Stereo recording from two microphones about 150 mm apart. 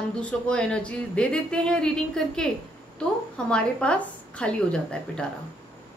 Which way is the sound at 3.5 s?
5° left (ahead or behind).